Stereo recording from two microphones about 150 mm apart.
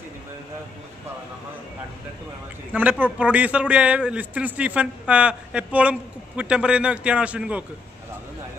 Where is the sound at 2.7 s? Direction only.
10° right (ahead or behind).